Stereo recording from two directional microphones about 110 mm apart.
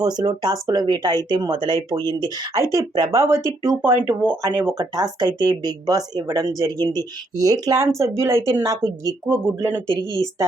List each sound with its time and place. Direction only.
0.0 s speech: 35° right (ahead or behind)
3.1 s speech: 25° right (ahead or behind)
4.8 s speech: 35° right (ahead or behind)